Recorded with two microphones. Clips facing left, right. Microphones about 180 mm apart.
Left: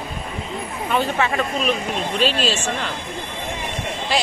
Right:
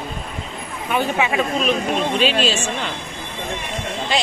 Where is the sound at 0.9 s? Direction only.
10° right (ahead or behind).